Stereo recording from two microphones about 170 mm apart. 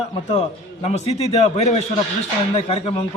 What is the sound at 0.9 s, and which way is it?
A man's voice, 40° left (ahead or behind).